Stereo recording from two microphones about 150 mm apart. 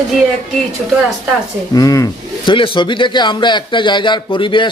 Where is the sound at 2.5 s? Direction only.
35° left (ahead or behind).